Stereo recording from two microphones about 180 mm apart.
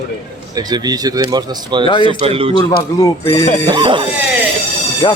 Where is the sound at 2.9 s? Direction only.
20° left (ahead or behind).